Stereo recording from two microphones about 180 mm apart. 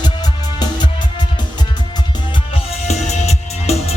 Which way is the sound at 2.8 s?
40° left (ahead or behind).